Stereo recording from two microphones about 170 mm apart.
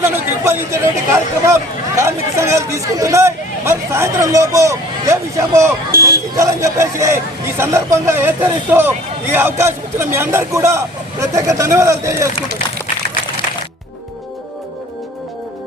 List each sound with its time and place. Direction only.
0.0 s speech: 15° right (ahead or behind)